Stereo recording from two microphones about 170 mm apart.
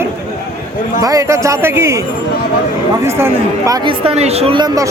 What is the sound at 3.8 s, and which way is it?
A woman's voice, 35° right (ahead or behind).